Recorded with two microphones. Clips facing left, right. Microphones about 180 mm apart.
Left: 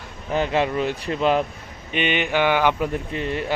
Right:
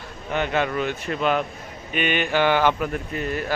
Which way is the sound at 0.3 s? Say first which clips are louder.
Left 2 dB; 30° left (ahead or behind).